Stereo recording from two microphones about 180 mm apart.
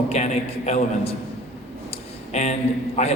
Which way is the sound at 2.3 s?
40° left (ahead or behind).